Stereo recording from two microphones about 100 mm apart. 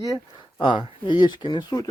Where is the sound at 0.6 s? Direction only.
55° left (ahead or behind).